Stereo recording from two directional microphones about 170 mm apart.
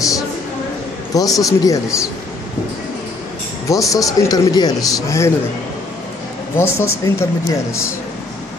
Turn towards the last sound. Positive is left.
turn(degrees=15)  # may be behind; listen again after turning